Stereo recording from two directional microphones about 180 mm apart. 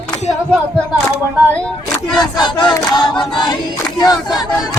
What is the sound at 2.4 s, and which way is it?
Battle cry, 25° left (ahead or behind).